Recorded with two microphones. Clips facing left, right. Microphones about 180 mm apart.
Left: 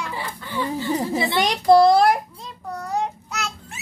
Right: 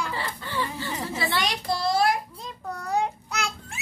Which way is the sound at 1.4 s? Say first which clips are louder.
Left 13 dB; 50° left (ahead or behind).